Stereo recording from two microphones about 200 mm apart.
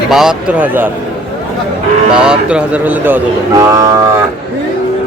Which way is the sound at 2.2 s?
5° right (ahead or behind).